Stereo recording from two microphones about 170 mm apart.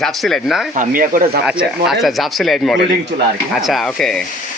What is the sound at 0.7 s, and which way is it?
Speech, 55° right (ahead or behind).